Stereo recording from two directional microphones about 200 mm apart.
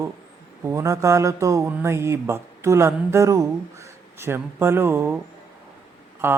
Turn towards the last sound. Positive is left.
turn(degrees=-10)  # may be behind; listen again after turning